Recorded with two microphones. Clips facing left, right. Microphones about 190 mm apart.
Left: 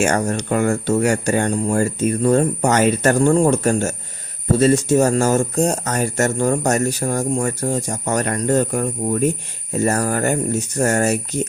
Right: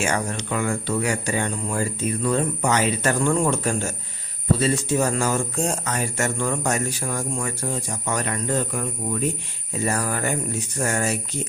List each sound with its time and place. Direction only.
0.0 s speech: 45° left (ahead or behind)